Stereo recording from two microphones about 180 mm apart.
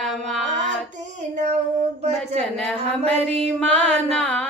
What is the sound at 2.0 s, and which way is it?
Speech, 35° right (ahead or behind).